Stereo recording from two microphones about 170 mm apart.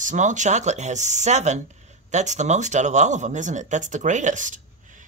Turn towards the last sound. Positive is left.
turn(degrees=-50)  # may be behind; listen again after turning